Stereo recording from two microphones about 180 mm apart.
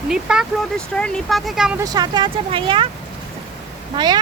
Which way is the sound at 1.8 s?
20° right (ahead or behind).